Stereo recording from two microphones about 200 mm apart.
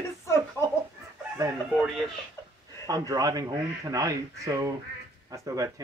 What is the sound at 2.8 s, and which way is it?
Speech, 15° right (ahead or behind).